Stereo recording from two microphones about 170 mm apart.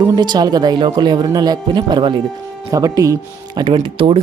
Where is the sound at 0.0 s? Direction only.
25° right (ahead or behind).